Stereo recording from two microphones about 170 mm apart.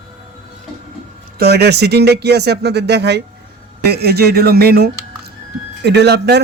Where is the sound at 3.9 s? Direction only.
70° right (ahead or behind).